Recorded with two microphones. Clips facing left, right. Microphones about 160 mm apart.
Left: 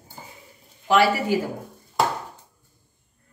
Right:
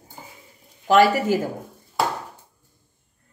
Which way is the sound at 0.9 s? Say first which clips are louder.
Right 3 dB; 45° right (ahead or behind).